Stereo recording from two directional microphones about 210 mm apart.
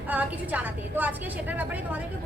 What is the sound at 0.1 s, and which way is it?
A woman's voice, 5° right (ahead or behind).